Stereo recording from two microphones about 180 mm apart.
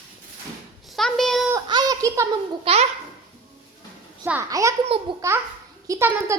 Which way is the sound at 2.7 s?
30° right (ahead or behind).